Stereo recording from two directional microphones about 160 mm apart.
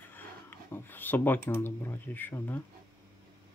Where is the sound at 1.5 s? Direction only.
10° left (ahead or behind).